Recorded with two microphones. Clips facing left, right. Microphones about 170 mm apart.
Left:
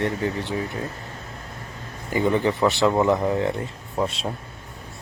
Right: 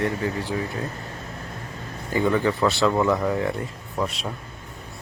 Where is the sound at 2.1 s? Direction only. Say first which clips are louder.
Even; 20° left (ahead or behind).